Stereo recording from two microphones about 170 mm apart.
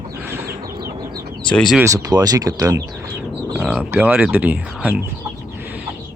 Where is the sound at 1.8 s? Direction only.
20° right (ahead or behind).